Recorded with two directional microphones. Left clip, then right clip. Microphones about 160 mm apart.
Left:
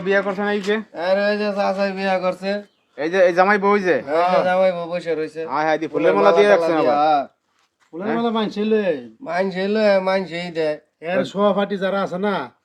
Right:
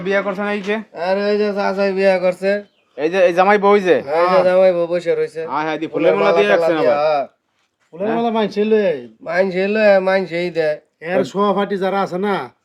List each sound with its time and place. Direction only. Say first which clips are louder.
0.0 s speech: right 1 dB; 30° right (ahead or behind); by 2.6 s 50° right (ahead or behind)
3.0 s speech: right 2 dB; 30° right (ahead or behind)
4.0 s a man's voice: right 3 dB; 45° right (ahead or behind)
5.5 s speech: left 1 dB; 15° right (ahead or behind)
6.8 s a man's voice: right 1 dB; 50° right (ahead or behind)